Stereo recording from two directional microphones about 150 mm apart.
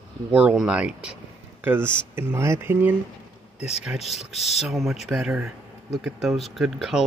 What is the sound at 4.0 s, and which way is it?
Speech, 45° left (ahead or behind).